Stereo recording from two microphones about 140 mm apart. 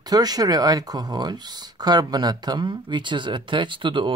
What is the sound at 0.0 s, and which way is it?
Speech, 30° right (ahead or behind).